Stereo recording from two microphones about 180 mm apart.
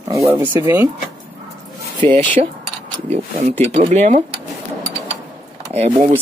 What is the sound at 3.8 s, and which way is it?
Speech, 40° right (ahead or behind).